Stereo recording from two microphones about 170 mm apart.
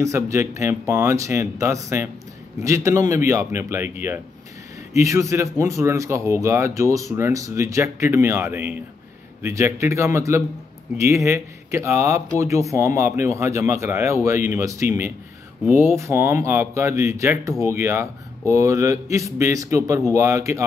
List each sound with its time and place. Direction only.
0.0 s speech: 15° right (ahead or behind)